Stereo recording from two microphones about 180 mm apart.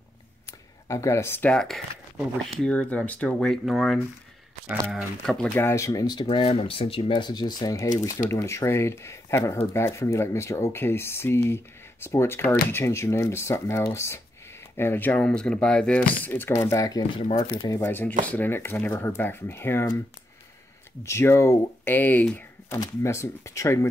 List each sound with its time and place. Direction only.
0.5 s speech: 15° left (ahead or behind)
21.0 s speech: 15° left (ahead or behind)